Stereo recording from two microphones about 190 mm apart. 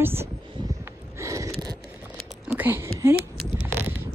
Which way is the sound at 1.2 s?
15° right (ahead or behind).